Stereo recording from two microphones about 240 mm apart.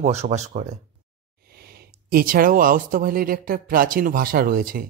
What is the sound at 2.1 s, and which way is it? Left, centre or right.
Speech, right.